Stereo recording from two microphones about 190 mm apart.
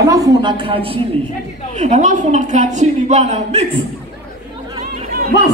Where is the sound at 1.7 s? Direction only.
40° right (ahead or behind).